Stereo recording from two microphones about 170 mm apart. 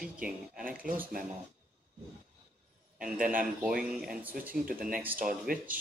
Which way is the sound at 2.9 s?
5° right (ahead or behind).